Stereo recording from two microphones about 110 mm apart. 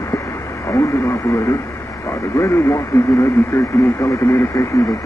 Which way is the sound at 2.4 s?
30° left (ahead or behind).